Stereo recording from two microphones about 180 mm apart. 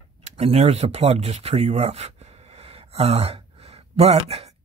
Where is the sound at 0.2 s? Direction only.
35° right (ahead or behind).